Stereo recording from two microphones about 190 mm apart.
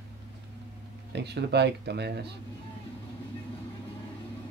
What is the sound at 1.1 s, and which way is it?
Speech, 60° right (ahead or behind).